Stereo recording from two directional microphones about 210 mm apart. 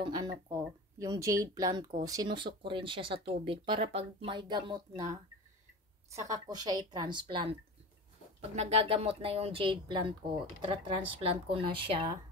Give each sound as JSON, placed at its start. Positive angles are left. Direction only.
{"t": 0.0, "sound": "a woman's voice", "side_deg": -20}